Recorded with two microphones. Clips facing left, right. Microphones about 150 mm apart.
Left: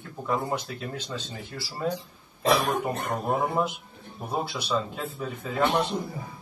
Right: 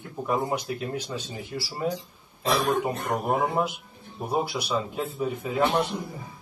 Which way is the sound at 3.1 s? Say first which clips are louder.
Right 1 dB; 15° right (ahead or behind).